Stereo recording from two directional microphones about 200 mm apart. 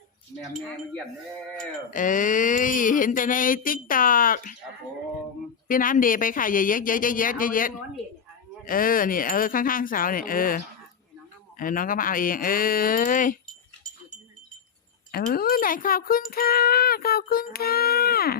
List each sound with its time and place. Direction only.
1.9 s a sound: 40° left (ahead or behind)
5.6 s speech: 45° left (ahead or behind)
15.1 s speech: 50° left (ahead or behind)